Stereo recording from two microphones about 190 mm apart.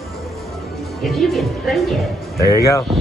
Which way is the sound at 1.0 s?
Centre (ahead or behind).